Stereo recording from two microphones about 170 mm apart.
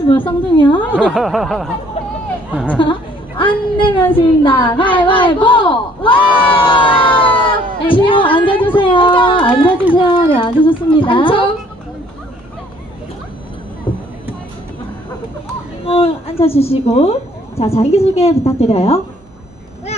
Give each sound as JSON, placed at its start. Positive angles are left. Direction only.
{"t": 0.1, "sound": "a woman's voice", "side_deg": 30}
{"t": 0.9, "sound": "snicker", "side_deg": 0}
{"t": 2.8, "sound": "a woman's voice", "side_deg": 30}
{"t": 10.0, "sound": "a sound", "side_deg": 30}
{"t": 15.8, "sound": "a woman's voice", "side_deg": 35}